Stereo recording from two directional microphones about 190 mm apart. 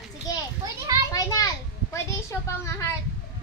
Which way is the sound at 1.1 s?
20° left (ahead or behind).